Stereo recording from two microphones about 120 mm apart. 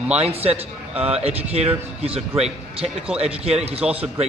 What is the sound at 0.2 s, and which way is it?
Speech, 60° right (ahead or behind).